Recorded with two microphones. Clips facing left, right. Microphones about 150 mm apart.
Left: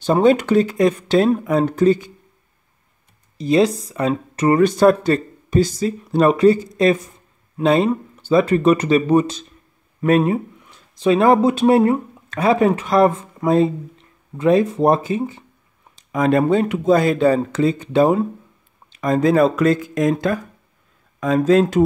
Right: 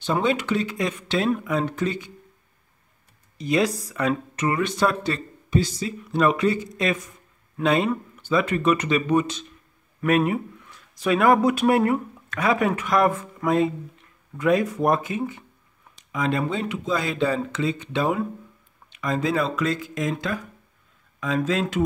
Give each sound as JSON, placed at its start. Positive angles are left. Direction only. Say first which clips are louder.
{"t": 0.0, "sound": "speech", "louder": "left 9 dB", "side_deg": 40}
{"t": 3.3, "sound": "speech", "louder": "left 6 dB", "side_deg": 30}
{"t": 4.4, "sound": "speech", "louder": "left 10 dB", "side_deg": 40}
{"t": 16.1, "sound": "speech", "louder": "left 9 dB", "side_deg": 50}